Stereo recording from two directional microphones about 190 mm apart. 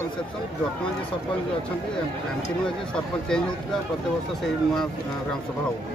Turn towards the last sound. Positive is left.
turn(degrees=0)  # may be behind; listen again after turning